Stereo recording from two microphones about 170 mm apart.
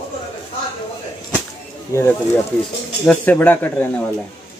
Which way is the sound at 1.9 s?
15° left (ahead or behind).